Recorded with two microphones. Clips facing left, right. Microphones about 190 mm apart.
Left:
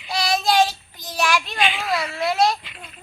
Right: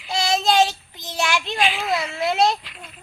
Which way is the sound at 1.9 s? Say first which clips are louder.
Even; 20° right (ahead or behind).